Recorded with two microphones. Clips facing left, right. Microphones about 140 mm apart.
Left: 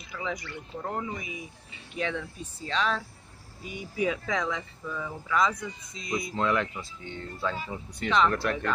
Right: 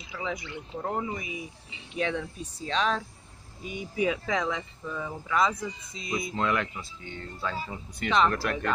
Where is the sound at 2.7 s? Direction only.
25° right (ahead or behind).